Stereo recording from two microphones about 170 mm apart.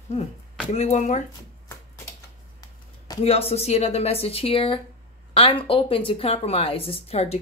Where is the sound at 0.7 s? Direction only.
40° left (ahead or behind).